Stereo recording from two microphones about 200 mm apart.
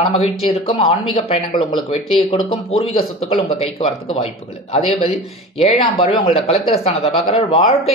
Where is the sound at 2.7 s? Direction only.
25° left (ahead or behind).